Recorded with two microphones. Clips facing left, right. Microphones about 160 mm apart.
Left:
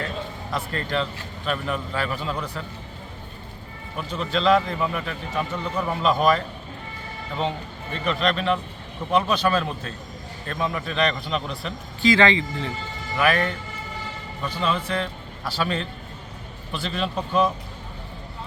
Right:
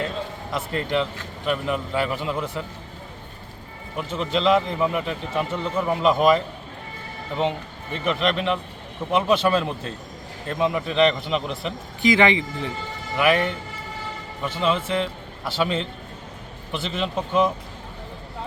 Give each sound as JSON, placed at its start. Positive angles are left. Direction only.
{"t": 0.5, "sound": "a man's voice", "side_deg": -20}
{"t": 3.9, "sound": "a man's voice", "side_deg": -20}
{"t": 7.9, "sound": "a man's voice", "side_deg": -20}